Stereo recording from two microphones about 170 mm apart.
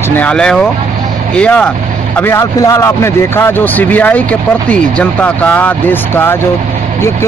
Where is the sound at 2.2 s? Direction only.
20° left (ahead or behind).